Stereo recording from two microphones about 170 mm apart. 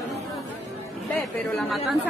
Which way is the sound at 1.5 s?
Centre (ahead or behind).